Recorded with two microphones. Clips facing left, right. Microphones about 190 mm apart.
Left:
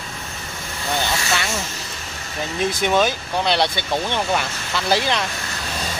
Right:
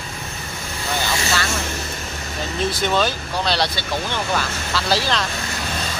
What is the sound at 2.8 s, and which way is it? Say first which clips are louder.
Speech: left 3 dB; 15° left (ahead or behind).